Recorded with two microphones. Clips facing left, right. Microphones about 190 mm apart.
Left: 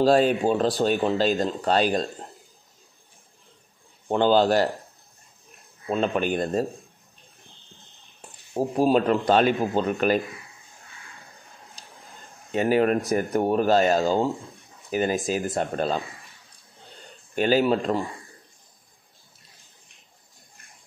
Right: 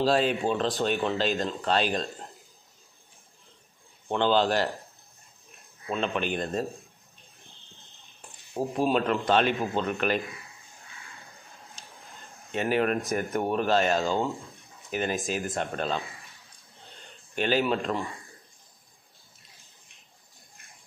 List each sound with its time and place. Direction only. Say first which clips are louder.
0.0 s speech: left 5 dB; 45° left (ahead or behind)
4.1 s speech: left 5 dB; 40° left (ahead or behind)
5.9 s speech: left 5 dB; 40° left (ahead or behind)
8.2 s speech: left 4 dB; 35° left (ahead or behind)
11.8 s a sound: left 2 dB; 35° left (ahead or behind)
13.3 s speech: left 5 dB; 35° left (ahead or behind)
16.9 s a sound: left 5 dB; 35° left (ahead or behind)